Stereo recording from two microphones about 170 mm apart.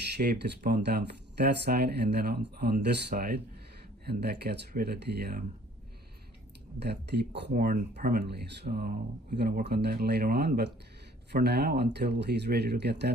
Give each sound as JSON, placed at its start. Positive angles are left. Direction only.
{"t": 0.2, "sound": "speech", "side_deg": -50}
{"t": 0.7, "sound": "speech", "side_deg": -75}
{"t": 6.8, "sound": "speech", "side_deg": -75}